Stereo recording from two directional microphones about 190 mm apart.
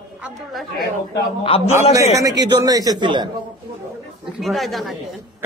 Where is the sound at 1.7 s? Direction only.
15° right (ahead or behind).